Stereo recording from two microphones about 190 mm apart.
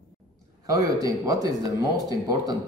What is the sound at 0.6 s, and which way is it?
Speech, 20° right (ahead or behind).